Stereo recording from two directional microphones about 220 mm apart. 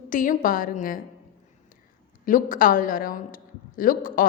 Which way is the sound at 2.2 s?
40° left (ahead or behind).